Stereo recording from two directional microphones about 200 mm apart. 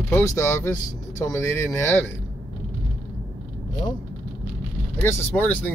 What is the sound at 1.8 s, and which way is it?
Speech, 10° left (ahead or behind).